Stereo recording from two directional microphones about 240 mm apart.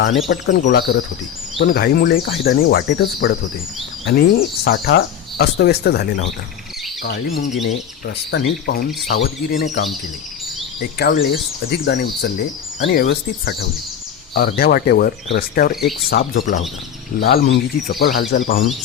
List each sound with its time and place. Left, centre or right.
0.3 s speech: left
10.9 s speech: left